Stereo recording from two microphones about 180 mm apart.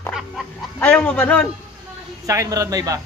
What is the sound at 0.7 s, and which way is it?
Speech, 5° left (ahead or behind).